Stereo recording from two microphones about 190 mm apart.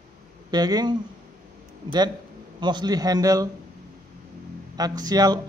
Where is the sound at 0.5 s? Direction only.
20° right (ahead or behind).